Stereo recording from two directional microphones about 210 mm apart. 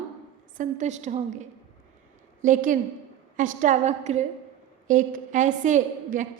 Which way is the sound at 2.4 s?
40° right (ahead or behind).